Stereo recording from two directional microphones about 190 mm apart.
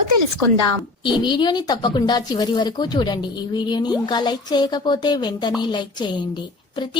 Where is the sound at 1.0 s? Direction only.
25° left (ahead or behind).